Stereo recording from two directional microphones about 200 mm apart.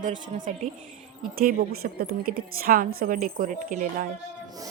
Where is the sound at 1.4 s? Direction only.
45° right (ahead or behind).